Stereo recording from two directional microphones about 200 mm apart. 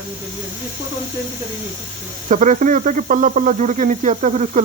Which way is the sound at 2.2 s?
40° right (ahead or behind).